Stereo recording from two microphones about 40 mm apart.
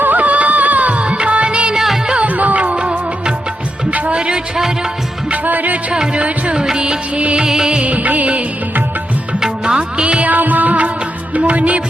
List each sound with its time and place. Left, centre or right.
0.0 s music: right
2.2 s music: right
3.9 s music: right
4.2 s music: right
5.3 s music: right
5.9 s music: right
6.2 s music: right
6.6 s music: right
7.8 s music: right
9.4 s music: right
10.2 s music: right